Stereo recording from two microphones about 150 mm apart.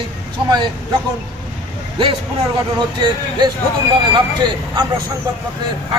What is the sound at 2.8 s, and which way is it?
A man's voice, 30° right (ahead or behind).